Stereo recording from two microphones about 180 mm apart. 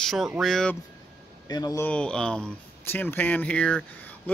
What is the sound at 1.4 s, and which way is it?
Speech, 20° left (ahead or behind).